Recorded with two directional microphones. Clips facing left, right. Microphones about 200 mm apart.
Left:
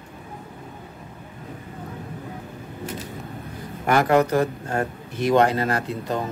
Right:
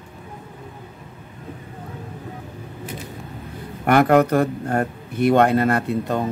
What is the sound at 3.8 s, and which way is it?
A man's voice, 60° right (ahead or behind).